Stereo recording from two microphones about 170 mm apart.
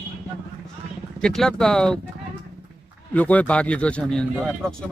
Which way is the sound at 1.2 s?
5° left (ahead or behind).